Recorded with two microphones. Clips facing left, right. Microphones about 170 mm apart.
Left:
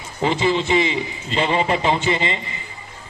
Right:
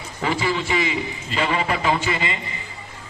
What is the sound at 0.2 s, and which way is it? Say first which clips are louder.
A man's voice: left 4 dB; 25° left (ahead or behind).